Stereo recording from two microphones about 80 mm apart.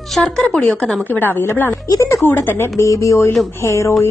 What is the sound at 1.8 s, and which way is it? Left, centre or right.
A woman's voice, left.